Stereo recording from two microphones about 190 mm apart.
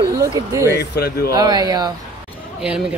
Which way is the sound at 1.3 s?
20° right (ahead or behind).